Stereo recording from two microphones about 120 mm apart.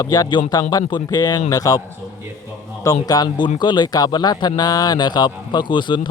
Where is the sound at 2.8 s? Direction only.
30° left (ahead or behind).